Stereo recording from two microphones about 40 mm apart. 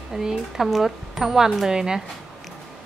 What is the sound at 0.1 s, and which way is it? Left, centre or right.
Speech, centre.